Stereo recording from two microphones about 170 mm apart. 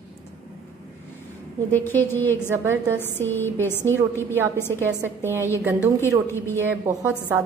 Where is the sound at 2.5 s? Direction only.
15° right (ahead or behind).